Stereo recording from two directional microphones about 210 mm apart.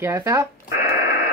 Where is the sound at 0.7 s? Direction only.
50° left (ahead or behind).